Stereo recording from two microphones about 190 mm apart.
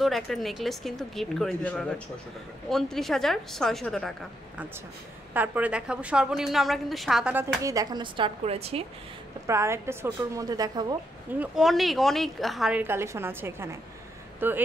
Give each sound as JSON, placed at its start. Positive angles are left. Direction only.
{"t": 0.0, "sound": "a woman's voice", "side_deg": 0}
{"t": 5.3, "sound": "a woman's voice", "side_deg": -10}
{"t": 7.6, "sound": "speech", "side_deg": -20}
{"t": 9.5, "sound": "a woman's voice", "side_deg": -15}
{"t": 11.3, "sound": "a woman's voice", "side_deg": 0}